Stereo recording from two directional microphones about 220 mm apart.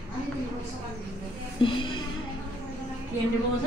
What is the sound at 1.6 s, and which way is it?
Speech, 20° left (ahead or behind).